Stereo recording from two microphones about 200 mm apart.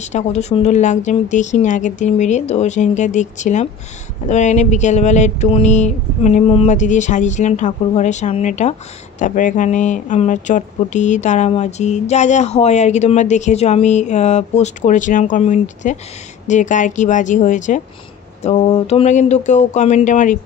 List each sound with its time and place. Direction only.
0.0 s speech: 35° left (ahead or behind)